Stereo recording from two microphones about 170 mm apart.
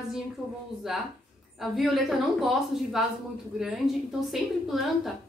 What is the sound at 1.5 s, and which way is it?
A woman's voice, centre (ahead or behind).